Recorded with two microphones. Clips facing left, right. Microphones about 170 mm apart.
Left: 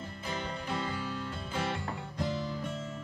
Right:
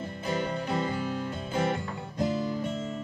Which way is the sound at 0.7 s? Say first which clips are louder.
Right 6 dB; 25° right (ahead or behind).